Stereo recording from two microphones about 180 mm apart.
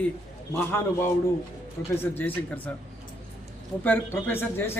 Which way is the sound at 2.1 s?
10° left (ahead or behind).